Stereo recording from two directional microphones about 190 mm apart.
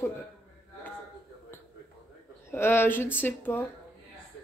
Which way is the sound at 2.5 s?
10° left (ahead or behind).